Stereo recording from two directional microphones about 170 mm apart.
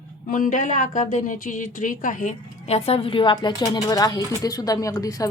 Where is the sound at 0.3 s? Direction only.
55° left (ahead or behind).